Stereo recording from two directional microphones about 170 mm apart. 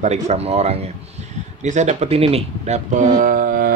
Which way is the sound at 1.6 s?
45° right (ahead or behind).